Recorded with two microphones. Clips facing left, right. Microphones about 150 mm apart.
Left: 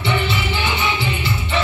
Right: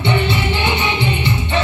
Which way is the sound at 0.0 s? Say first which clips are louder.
Right 3 dB; 25° right (ahead or behind).